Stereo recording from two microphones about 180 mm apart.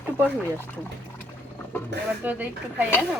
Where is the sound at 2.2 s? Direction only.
10° right (ahead or behind).